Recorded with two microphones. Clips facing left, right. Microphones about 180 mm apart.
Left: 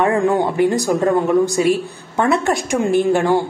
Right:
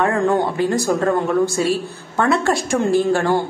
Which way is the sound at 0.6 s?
15° left (ahead or behind).